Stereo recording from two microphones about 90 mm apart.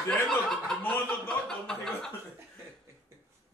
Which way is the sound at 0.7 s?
10° left (ahead or behind).